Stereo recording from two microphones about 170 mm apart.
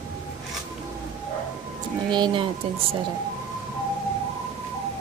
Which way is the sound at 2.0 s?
25° right (ahead or behind).